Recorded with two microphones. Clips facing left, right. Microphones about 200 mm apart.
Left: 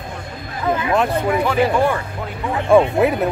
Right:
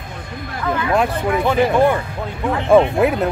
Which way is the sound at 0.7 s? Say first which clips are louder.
Left 1 dB; 20° left (ahead or behind).